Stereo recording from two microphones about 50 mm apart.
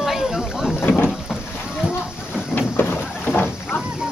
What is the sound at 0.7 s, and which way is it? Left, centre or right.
Boat, left.